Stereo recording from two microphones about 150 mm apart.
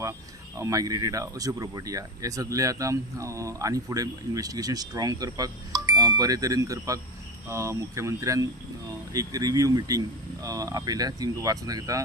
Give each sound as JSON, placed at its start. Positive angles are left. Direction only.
{"t": 0.6, "sound": "speech", "side_deg": -20}